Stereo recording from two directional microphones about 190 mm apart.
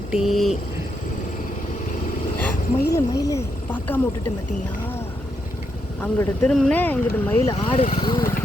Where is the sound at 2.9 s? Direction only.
20° left (ahead or behind).